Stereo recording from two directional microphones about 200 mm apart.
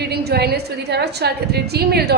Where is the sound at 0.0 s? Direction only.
55° right (ahead or behind).